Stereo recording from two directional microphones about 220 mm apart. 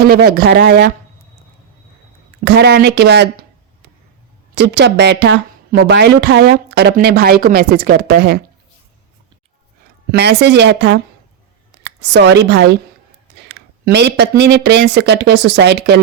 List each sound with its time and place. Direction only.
0.0 s a woman's voice: 45° right (ahead or behind)
2.4 s a woman's voice: 50° right (ahead or behind)
4.5 s a woman's voice: 50° right (ahead or behind)
9.8 s a woman's voice: 45° right (ahead or behind)